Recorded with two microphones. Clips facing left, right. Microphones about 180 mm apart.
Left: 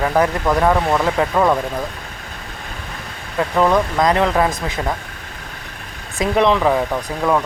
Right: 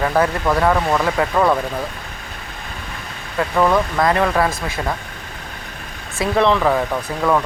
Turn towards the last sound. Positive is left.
turn(degrees=15)  # may be behind; listen again after turning